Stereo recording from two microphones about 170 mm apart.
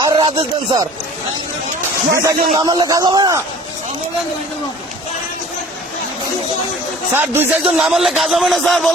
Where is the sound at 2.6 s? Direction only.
25° right (ahead or behind).